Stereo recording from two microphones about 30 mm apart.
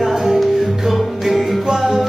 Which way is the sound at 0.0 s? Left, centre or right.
Centre.